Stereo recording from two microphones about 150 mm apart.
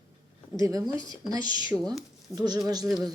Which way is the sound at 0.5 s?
20° right (ahead or behind).